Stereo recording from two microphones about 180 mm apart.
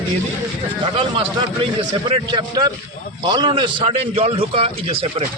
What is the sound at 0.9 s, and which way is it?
A man's voice, 30° right (ahead or behind).